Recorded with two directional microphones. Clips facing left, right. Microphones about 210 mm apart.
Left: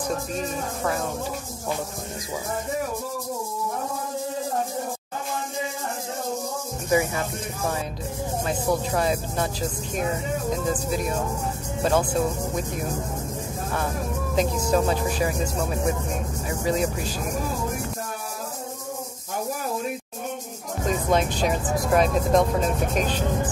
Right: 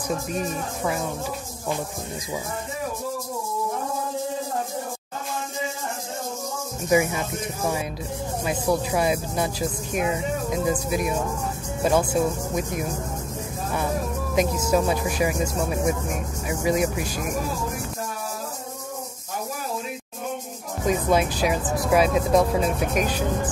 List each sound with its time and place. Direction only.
6.9 s speech: 15° right (ahead or behind)
14.3 s speech: 10° right (ahead or behind)
20.8 s speech: 10° right (ahead or behind)